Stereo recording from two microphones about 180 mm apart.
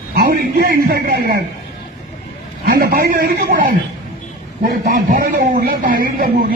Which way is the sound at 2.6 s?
55° right (ahead or behind).